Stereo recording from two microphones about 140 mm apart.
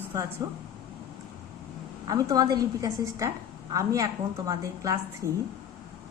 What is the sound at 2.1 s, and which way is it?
A woman's voice, 25° right (ahead or behind).